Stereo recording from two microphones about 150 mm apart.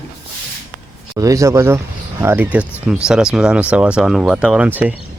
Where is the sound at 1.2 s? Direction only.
20° right (ahead or behind).